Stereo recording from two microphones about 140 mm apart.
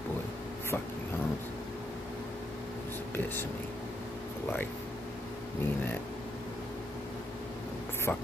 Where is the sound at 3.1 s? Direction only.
15° left (ahead or behind).